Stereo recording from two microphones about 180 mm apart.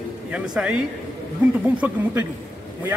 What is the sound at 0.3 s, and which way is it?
A man's voice, 5° right (ahead or behind).